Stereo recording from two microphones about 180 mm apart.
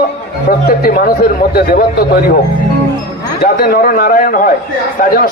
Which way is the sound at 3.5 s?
55° left (ahead or behind).